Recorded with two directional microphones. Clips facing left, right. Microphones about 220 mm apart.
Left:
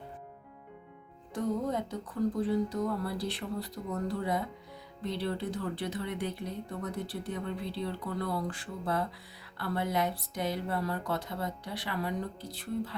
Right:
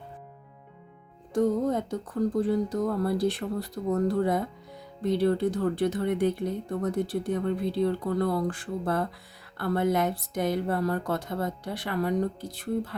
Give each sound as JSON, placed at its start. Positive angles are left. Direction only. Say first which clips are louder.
{"t": 1.3, "sound": "speech", "louder": "right 7 dB", "side_deg": -45}